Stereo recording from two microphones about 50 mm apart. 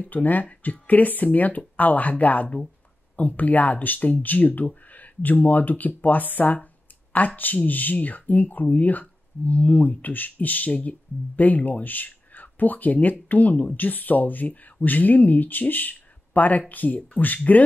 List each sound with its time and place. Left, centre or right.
0.0 s speech: left